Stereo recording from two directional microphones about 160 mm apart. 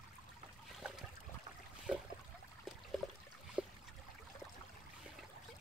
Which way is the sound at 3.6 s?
5° right (ahead or behind).